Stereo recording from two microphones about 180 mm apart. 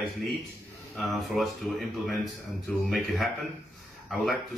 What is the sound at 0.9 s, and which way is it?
Speech, centre (ahead or behind).